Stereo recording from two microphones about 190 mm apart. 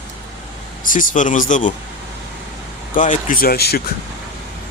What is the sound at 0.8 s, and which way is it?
Speech, 45° left (ahead or behind).